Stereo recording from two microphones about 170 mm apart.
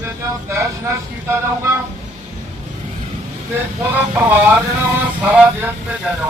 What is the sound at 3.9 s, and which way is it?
Speech, 10° right (ahead or behind).